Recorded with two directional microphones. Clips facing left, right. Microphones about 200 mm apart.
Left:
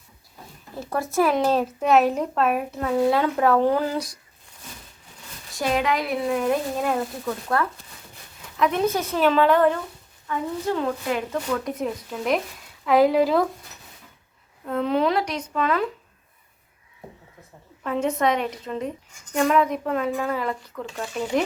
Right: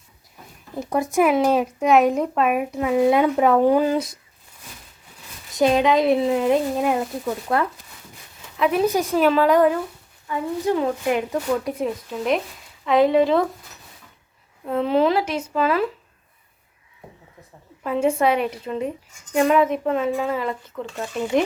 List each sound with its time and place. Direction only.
0.8 s speech: 15° right (ahead or behind)
5.5 s speech: 20° right (ahead or behind)
8.5 s speech: 5° right (ahead or behind)
11.6 s speech: centre (ahead or behind)
14.6 s speech: 5° right (ahead or behind)
17.8 s speech: 5° right (ahead or behind)